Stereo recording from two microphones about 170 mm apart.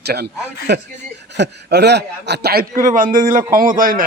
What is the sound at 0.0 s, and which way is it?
Speech, 70° right (ahead or behind).